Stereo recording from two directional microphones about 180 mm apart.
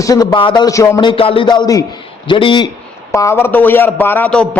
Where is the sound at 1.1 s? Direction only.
30° left (ahead or behind); by 4.4 s 10° left (ahead or behind).